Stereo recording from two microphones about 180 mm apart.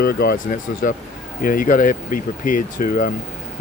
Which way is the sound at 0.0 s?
60° left (ahead or behind).